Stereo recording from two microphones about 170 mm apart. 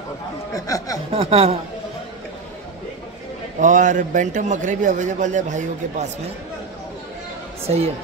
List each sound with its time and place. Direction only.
0.6 s speech: 20° left (ahead or behind)
1.1 s a man's voice: 35° right (ahead or behind)
3.6 s a man's voice: 45° right (ahead or behind)
7.6 s a man's voice: 35° right (ahead or behind)